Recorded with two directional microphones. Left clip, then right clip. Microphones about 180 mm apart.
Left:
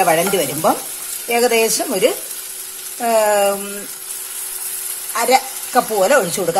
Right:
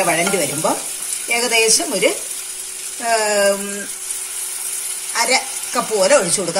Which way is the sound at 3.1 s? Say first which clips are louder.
Left 2 dB; 45° left (ahead or behind).